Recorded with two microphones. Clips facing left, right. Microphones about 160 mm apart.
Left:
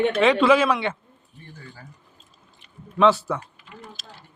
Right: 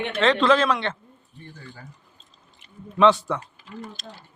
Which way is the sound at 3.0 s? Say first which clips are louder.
Even; 5° left (ahead or behind).